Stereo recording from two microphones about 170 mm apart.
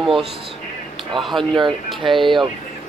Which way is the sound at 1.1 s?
Centre (ahead or behind).